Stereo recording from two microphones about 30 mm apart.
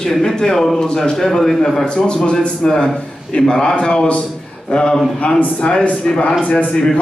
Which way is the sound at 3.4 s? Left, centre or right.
Centre.